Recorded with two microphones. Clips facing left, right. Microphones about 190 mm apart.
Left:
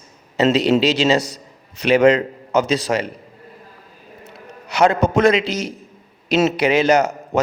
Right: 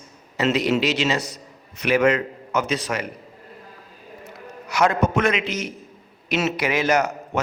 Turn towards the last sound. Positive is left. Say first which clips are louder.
# left 5 dB
turn(degrees=30)  # may be behind; listen again after turning